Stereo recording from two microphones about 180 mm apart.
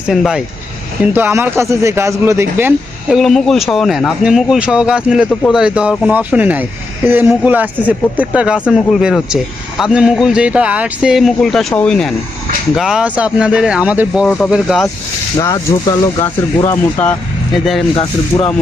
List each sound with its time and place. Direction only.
0.1 s a man's voice: centre (ahead or behind)
1.1 s speech: 10° right (ahead or behind)
3.2 s a man's voice: centre (ahead or behind)
14.3 s a man's voice: 5° left (ahead or behind)
15.4 s speech: 20° left (ahead or behind)
17.9 s speech: 30° left (ahead or behind)